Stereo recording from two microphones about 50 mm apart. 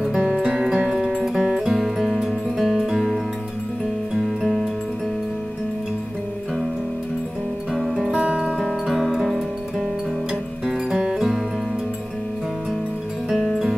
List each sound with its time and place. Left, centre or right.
0.2 s music: centre
4.1 s music: centre
7.7 s music: centre
8.2 s music: right
8.8 s music: centre
10.9 s music: centre